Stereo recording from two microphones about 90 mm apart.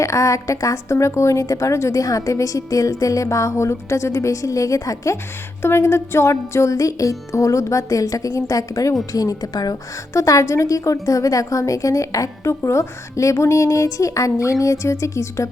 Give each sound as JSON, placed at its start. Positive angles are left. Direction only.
{"t": 0.0, "sound": "a woman's voice", "side_deg": 35}
{"t": 10.2, "sound": "a woman's voice", "side_deg": 35}